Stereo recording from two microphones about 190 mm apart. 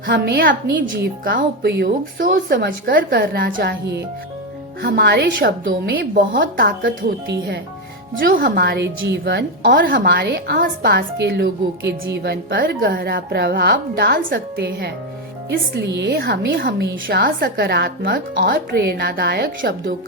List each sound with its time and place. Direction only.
0.0 s speech: 50° right (ahead or behind)
8.2 s a woman's voice: 50° right (ahead or behind); by 9.4 s 65° right (ahead or behind)
9.6 s a woman's voice: 50° right (ahead or behind)
18.5 s a woman's voice: 60° right (ahead or behind)